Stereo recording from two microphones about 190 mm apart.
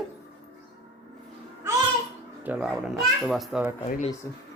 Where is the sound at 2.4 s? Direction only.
5° right (ahead or behind).